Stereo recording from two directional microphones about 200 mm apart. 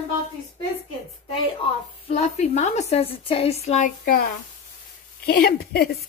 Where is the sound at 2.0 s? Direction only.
35° left (ahead or behind).